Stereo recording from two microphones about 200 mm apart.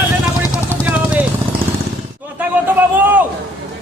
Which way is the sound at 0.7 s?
10° right (ahead or behind).